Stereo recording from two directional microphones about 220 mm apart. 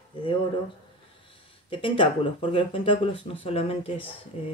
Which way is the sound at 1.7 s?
25° left (ahead or behind).